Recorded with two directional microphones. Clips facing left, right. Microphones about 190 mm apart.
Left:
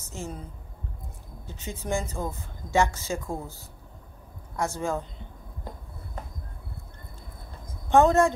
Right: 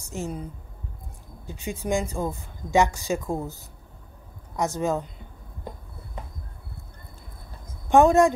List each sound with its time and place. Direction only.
0.0 s a woman's voice: 15° right (ahead or behind)
1.4 s a woman's voice: 15° right (ahead or behind)
7.9 s a woman's voice: 15° right (ahead or behind)